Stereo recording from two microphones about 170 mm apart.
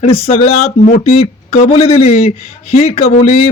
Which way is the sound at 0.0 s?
35° left (ahead or behind).